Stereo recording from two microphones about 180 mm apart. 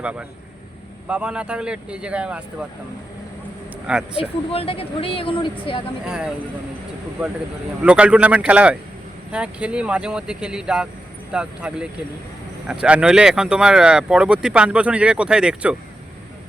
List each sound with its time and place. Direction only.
0.0 s a man's voice: 5° right (ahead or behind)
3.8 s speech: 5° right (ahead or behind)
4.2 s speech: 30° left (ahead or behind)
7.9 s a man's voice: 5° right (ahead or behind)